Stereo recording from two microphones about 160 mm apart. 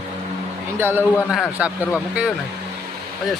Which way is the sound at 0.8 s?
15° right (ahead or behind).